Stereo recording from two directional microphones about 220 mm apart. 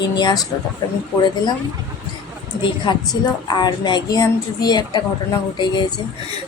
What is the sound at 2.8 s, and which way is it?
A woman's voice, 20° left (ahead or behind).